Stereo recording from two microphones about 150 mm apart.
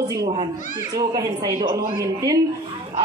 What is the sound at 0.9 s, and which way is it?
A woman's voice, 25° right (ahead or behind).